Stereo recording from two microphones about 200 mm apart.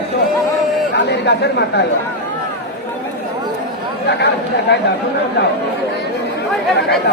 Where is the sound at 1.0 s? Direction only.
60° left (ahead or behind).